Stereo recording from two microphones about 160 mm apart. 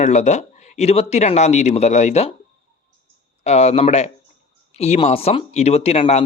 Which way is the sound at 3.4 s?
40° left (ahead or behind).